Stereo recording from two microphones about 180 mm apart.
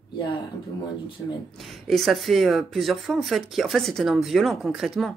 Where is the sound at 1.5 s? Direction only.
Centre (ahead or behind).